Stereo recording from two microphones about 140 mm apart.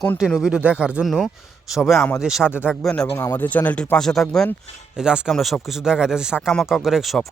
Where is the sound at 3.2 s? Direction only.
15° left (ahead or behind).